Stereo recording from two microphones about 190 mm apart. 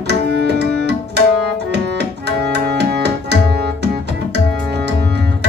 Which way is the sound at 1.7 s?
60° right (ahead or behind).